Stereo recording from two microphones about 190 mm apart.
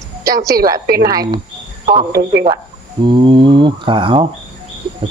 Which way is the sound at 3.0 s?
25° right (ahead or behind).